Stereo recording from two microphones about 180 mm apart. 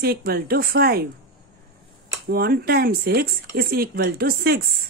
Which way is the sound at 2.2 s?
55° right (ahead or behind).